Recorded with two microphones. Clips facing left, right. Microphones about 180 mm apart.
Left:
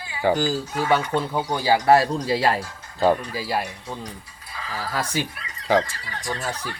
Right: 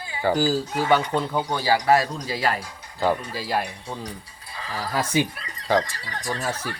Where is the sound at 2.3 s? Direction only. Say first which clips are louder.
Left 3 dB; 30° left (ahead or behind).